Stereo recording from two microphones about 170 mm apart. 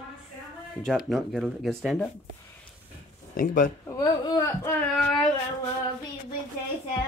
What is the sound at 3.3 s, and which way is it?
Speech, 50° left (ahead or behind).